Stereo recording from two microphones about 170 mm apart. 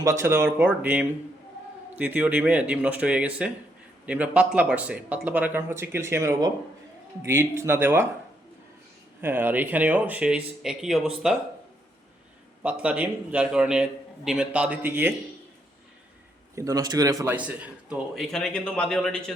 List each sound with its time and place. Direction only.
0.0 s speech: 15° right (ahead or behind)
9.2 s speech: 10° right (ahead or behind)
12.6 s speech: 10° right (ahead or behind)
16.6 s a man's voice: 20° right (ahead or behind)
17.3 s a man's voice: 5° right (ahead or behind)